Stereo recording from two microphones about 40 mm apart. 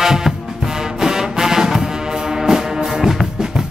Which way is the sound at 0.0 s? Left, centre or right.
Centre.